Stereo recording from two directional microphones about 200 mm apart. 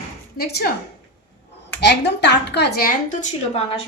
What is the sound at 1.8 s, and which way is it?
A woman's voice, 60° left (ahead or behind).